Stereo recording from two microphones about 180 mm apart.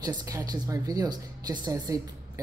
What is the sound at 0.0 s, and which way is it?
Speech, 20° right (ahead or behind).